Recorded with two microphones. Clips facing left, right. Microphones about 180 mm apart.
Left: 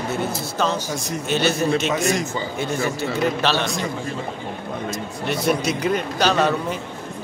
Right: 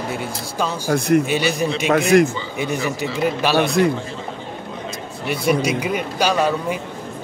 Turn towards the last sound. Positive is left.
turn(degrees=-10)  # may be behind; listen again after turning